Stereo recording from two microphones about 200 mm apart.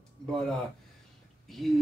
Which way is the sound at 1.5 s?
Centre (ahead or behind).